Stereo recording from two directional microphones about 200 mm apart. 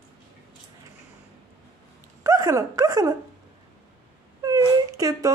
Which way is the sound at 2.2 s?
15° right (ahead or behind).